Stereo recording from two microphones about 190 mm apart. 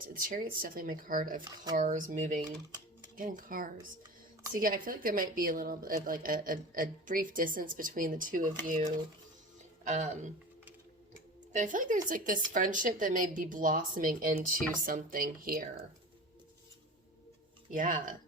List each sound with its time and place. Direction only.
0.1 s a woman's voice: 50° right (ahead or behind)
11.5 s a woman's voice: 45° right (ahead or behind)
17.7 s a woman's voice: 45° right (ahead or behind)